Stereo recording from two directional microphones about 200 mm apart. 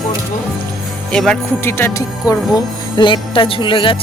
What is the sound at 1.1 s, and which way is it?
Speech, 5° left (ahead or behind).